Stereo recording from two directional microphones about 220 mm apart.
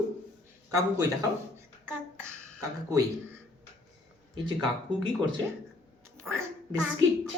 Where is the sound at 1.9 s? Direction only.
15° right (ahead or behind).